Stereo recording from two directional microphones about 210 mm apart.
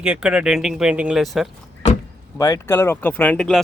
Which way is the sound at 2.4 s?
15° left (ahead or behind).